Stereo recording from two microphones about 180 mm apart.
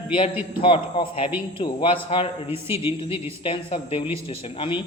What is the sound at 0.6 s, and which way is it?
Speech, 30° left (ahead or behind).